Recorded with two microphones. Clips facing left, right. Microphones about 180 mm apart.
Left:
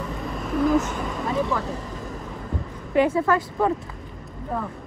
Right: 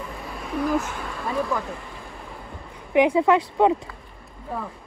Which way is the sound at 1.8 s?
40° left (ahead or behind).